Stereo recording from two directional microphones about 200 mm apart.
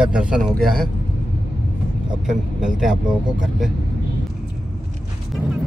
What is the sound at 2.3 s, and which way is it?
Speech, 5° right (ahead or behind).